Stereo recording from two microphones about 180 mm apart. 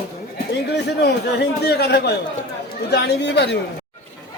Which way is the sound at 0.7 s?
70° left (ahead or behind).